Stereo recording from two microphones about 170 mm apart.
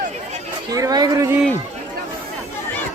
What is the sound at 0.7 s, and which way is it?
Speech, 20° right (ahead or behind).